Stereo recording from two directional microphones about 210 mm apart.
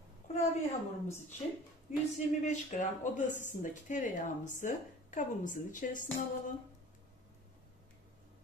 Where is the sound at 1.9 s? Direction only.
40° left (ahead or behind).